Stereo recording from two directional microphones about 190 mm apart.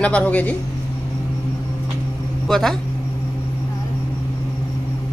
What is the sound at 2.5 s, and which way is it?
Speech, centre (ahead or behind).